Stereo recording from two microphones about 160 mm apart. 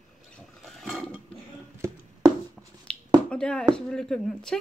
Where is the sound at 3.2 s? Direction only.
5° left (ahead or behind).